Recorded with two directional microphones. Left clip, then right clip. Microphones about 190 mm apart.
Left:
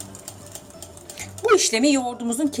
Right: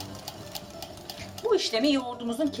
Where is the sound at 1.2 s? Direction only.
50° left (ahead or behind).